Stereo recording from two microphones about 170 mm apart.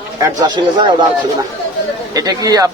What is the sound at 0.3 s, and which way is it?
Speech, 25° right (ahead or behind).